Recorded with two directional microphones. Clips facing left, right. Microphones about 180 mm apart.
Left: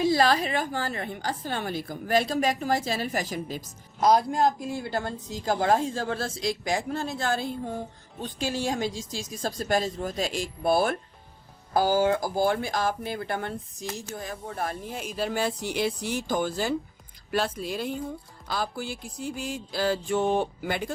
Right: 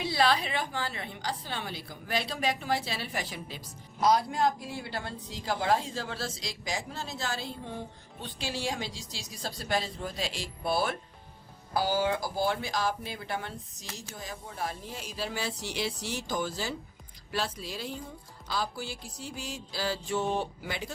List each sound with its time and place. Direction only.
0.0 s a woman's voice: 45° left (ahead or behind)